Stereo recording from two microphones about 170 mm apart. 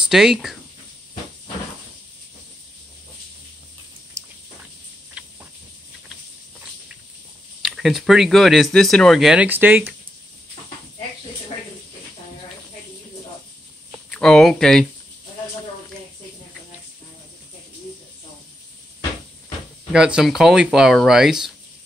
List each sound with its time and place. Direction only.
0.0 s speech: 5° right (ahead or behind)
4.2 s a sound: 20° right (ahead or behind)
5.2 s cricket: 5° right (ahead or behind)
7.6 s speech: centre (ahead or behind)
14.1 s speech: 5° left (ahead or behind)
19.9 s speech: 5° right (ahead or behind)